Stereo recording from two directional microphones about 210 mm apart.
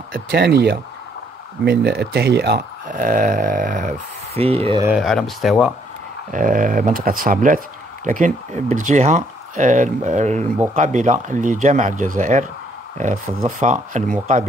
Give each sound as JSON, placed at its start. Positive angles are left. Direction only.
{"t": 0.1, "sound": "speech", "side_deg": -50}
{"t": 4.4, "sound": "speech", "side_deg": -30}
{"t": 4.8, "sound": "speech", "side_deg": 0}
{"t": 6.3, "sound": "speech", "side_deg": -40}